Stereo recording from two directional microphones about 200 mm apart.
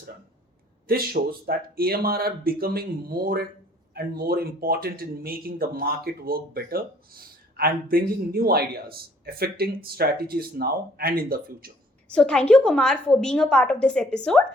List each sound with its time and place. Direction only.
0.9 s speech: 50° right (ahead or behind)
12.1 s a woman's voice: 5° left (ahead or behind)